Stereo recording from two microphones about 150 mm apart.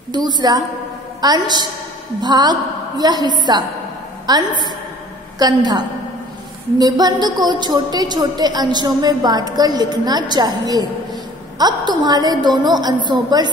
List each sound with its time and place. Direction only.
0.1 s a woman's voice: 30° right (ahead or behind)